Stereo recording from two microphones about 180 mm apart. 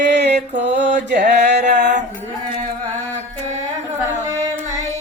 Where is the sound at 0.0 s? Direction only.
70° right (ahead or behind).